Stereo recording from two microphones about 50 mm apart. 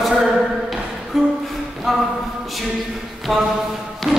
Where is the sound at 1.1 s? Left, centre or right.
Centre.